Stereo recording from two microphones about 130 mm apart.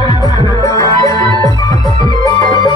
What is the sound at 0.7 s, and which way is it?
Music, 25° left (ahead or behind).